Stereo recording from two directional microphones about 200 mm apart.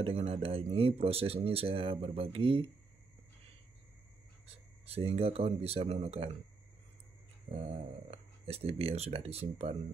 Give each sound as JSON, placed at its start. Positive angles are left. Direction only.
{"t": 0.0, "sound": "speech", "side_deg": -30}
{"t": 4.8, "sound": "speech", "side_deg": -30}
{"t": 7.5, "sound": "speech", "side_deg": -30}